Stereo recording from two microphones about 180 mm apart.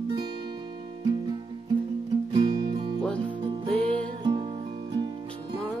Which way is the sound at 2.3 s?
25° right (ahead or behind).